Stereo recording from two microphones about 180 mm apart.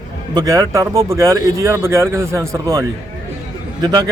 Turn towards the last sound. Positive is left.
turn(degrees=-20)  # may be behind; listen again after turning